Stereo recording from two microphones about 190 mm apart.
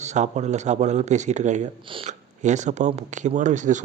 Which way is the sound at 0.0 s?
35° right (ahead or behind).